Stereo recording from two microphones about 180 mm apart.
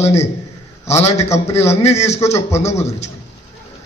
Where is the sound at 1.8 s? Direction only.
35° left (ahead or behind).